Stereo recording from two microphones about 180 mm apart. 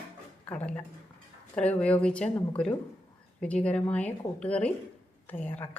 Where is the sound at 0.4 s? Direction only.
10° left (ahead or behind).